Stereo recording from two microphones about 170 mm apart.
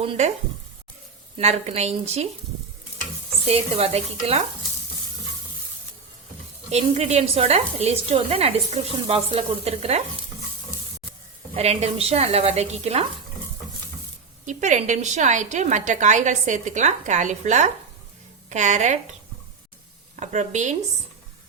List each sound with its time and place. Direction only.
0.0 s speech: 35° right (ahead or behind)
1.4 s speech: 40° right (ahead or behind)
3.4 s speech: 35° right (ahead or behind)
6.7 s speech: 40° right (ahead or behind)
11.5 s speech: 40° right (ahead or behind)
14.4 s a woman's voice: 45° right (ahead or behind)
20.1 s a woman's voice: 45° right (ahead or behind)